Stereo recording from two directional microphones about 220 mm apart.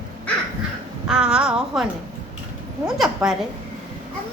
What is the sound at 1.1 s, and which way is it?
Speech, 5° right (ahead or behind).